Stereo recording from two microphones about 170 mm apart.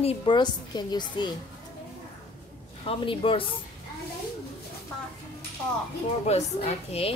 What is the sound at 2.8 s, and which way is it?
Speech, 30° left (ahead or behind).